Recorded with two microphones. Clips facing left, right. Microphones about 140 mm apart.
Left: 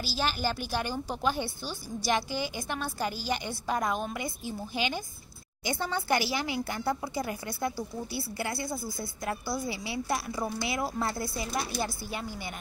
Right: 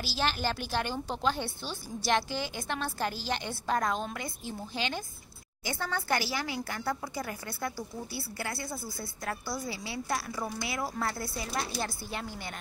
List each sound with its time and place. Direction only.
0.0 s a woman's voice: centre (ahead or behind)